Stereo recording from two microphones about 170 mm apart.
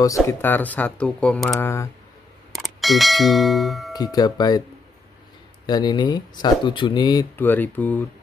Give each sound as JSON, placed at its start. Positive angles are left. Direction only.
{"t": 0.0, "sound": "speech", "side_deg": 15}
{"t": 1.5, "sound": "speech", "side_deg": 15}
{"t": 2.5, "sound": "speech", "side_deg": 0}
{"t": 3.9, "sound": "speech", "side_deg": 20}
{"t": 5.7, "sound": "speech", "side_deg": 25}
{"t": 7.3, "sound": "speech", "side_deg": 10}